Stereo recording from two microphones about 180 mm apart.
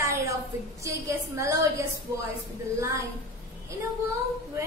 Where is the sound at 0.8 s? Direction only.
15° right (ahead or behind).